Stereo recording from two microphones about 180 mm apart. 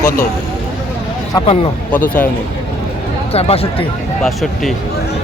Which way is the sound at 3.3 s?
35° left (ahead or behind).